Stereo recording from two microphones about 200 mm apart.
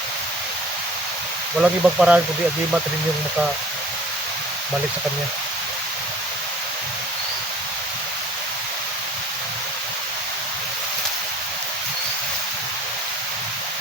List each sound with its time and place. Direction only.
1.5 s speech: 5° right (ahead or behind)